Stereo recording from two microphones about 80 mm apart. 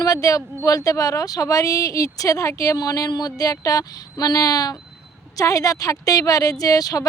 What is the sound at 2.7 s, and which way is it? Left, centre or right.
A woman's voice, left.